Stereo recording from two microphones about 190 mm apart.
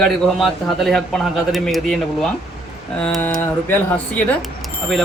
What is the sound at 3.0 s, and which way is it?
Speech, 5° left (ahead or behind).